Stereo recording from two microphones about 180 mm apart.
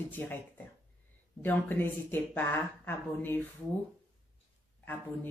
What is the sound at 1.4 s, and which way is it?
Speech, 10° left (ahead or behind).